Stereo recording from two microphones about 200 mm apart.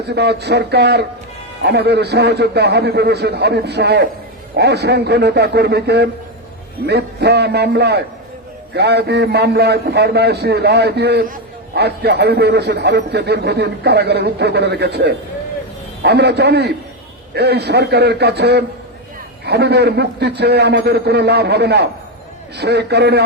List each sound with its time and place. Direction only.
0.1 s a man's voice: 55° right (ahead or behind)